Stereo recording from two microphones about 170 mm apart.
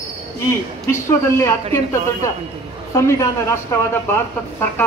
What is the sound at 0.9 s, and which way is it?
A woman's voice, 15° left (ahead or behind).